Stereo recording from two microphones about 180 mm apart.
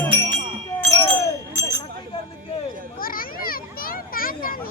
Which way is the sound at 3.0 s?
50° left (ahead or behind).